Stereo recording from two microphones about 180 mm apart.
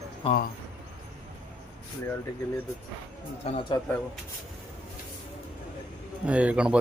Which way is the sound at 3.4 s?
35° left (ahead or behind).